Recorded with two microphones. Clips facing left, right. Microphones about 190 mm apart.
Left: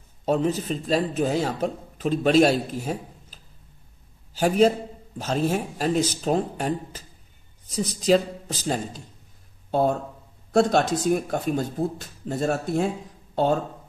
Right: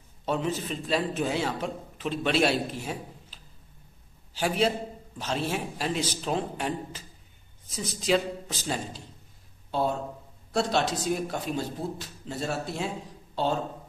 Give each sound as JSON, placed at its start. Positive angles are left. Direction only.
{"t": 0.2, "sound": "speech", "side_deg": 40}